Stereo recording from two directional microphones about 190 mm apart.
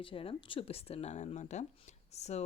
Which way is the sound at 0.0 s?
30° left (ahead or behind).